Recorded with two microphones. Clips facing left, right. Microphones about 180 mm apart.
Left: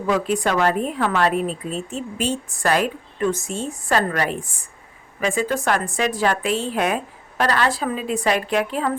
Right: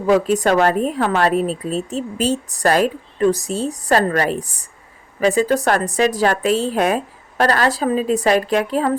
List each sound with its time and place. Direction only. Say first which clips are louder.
0.1 s a woman's voice: right 6 dB; 40° right (ahead or behind)